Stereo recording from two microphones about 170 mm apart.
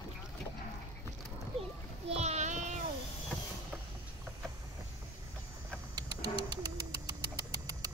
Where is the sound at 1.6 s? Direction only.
40° right (ahead or behind).